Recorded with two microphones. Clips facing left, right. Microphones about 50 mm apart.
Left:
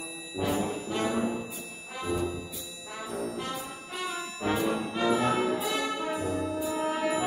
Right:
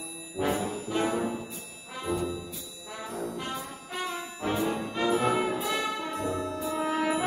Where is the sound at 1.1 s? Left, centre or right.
Left.